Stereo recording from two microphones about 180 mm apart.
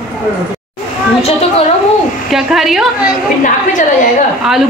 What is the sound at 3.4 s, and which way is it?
Speech, 45° left (ahead or behind).